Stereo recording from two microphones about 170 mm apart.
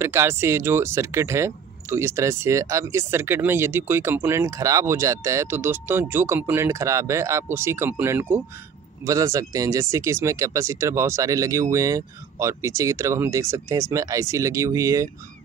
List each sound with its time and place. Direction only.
0.0 s speech: 15° right (ahead or behind)